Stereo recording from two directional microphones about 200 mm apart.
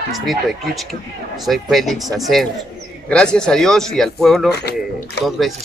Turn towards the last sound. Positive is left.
turn(degrees=0)  # may be behind; listen again after turning